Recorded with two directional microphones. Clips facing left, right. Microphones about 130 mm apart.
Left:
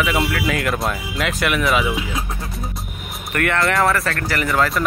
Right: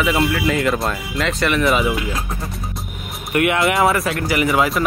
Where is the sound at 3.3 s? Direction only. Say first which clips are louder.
Right 2 dB; 10° right (ahead or behind).